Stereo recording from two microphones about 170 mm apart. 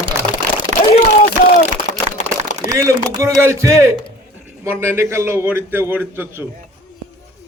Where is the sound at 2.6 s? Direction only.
15° right (ahead or behind).